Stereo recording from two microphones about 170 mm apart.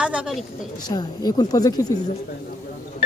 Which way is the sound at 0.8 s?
25° left (ahead or behind).